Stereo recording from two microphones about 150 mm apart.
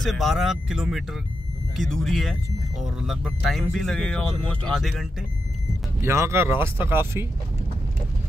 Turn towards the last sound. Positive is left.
turn(degrees=-15)  # may be behind; listen again after turning